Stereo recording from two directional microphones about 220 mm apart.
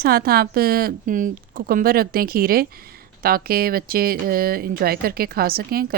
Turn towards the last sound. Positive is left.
turn(degrees=-45)  # may be behind; listen again after turning